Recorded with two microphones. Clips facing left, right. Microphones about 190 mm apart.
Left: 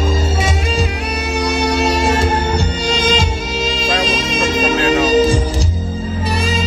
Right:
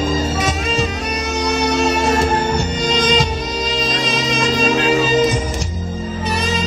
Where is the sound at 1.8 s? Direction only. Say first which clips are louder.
Even; 30° left (ahead or behind).